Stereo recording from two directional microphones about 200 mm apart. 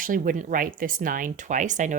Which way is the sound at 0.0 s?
45° right (ahead or behind).